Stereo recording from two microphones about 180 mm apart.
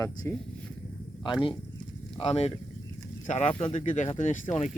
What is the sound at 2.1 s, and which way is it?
Speech, 35° left (ahead or behind).